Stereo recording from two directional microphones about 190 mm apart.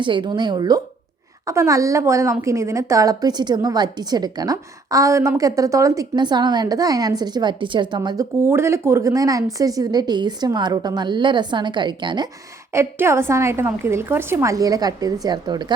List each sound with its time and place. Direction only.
0.0 s a woman's voice: 25° right (ahead or behind)
12.7 s a woman's voice: 15° right (ahead or behind)